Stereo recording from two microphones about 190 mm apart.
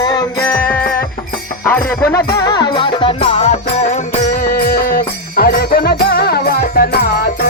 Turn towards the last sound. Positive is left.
turn(degrees=55)  # may be behind; listen again after turning